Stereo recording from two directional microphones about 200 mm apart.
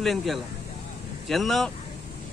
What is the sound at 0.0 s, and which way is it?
Speech, centre (ahead or behind).